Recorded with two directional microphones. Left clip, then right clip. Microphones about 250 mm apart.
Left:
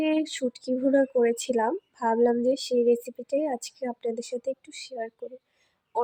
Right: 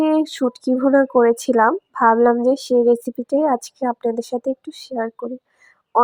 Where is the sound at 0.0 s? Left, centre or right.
Centre.